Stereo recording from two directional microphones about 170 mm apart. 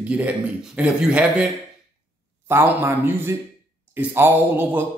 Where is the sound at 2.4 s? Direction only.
15° right (ahead or behind).